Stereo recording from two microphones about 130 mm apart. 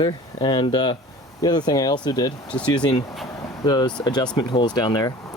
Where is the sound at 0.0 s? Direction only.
35° left (ahead or behind).